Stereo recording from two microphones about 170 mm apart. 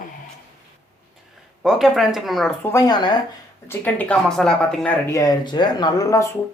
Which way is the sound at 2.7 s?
20° left (ahead or behind).